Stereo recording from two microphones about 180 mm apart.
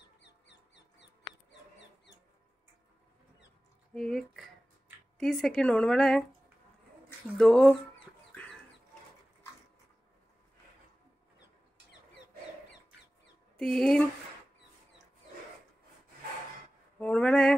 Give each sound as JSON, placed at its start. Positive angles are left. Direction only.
{"t": 0.2, "sound": "music", "side_deg": 75}
{"t": 3.9, "sound": "speech", "side_deg": 0}
{"t": 7.3, "sound": "speech", "side_deg": 5}
{"t": 13.6, "sound": "speech", "side_deg": 5}
{"t": 17.0, "sound": "a sound", "side_deg": 5}